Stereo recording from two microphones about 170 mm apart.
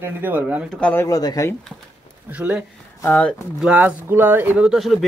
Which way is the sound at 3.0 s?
5° left (ahead or behind).